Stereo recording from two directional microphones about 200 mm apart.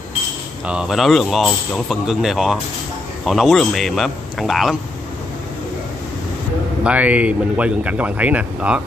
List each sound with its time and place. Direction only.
0.7 s speech: 5° right (ahead or behind)
6.8 s speech: 5° right (ahead or behind)